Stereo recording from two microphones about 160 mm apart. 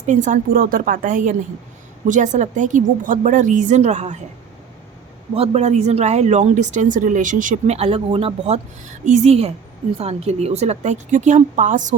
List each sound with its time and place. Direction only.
0.0 s speech: 50° right (ahead or behind)
5.3 s speech: 40° right (ahead or behind)